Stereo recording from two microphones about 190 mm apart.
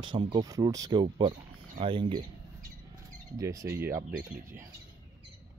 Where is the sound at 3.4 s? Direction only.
15° right (ahead or behind).